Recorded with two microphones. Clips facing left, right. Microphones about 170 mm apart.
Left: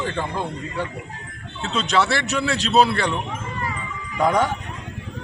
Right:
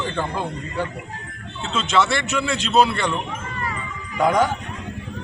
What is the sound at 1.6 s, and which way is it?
Speech, 35° left (ahead or behind).